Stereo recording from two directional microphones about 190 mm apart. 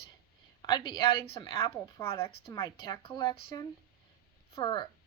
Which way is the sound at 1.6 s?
15° left (ahead or behind).